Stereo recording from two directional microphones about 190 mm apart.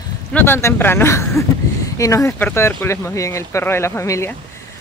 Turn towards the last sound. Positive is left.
turn(degrees=15)  # may be behind; listen again after turning